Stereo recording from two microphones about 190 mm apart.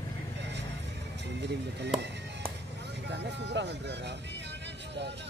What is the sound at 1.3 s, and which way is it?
Speech, 65° right (ahead or behind).